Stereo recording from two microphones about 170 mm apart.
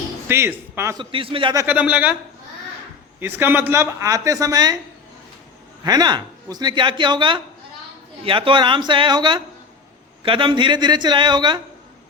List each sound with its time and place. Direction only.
0.3 s speech: 15° right (ahead or behind)
1.1 s a man's voice: 30° right (ahead or behind)
1.5 s speech: 10° right (ahead or behind)
3.2 s speech: 10° right (ahead or behind)
5.8 s speech: 25° right (ahead or behind)